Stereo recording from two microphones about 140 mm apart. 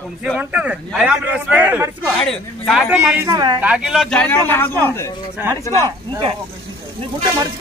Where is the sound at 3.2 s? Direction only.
30° right (ahead or behind).